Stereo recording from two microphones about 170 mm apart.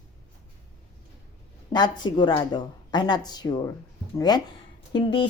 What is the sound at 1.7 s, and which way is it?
Speech, 25° left (ahead or behind).